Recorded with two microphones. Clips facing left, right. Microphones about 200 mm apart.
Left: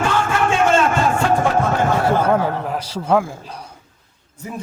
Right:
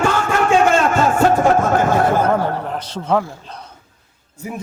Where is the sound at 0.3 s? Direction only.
40° right (ahead or behind).